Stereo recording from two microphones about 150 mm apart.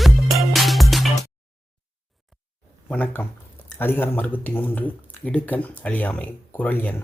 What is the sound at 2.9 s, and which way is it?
Speech, 10° left (ahead or behind).